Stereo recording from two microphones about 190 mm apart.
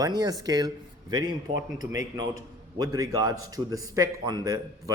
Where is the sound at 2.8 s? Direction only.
20° right (ahead or behind).